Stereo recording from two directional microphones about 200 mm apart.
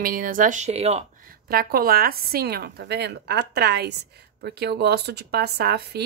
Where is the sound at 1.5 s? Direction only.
50° right (ahead or behind).